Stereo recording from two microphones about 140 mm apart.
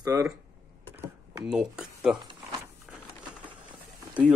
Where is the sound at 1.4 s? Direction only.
5° right (ahead or behind).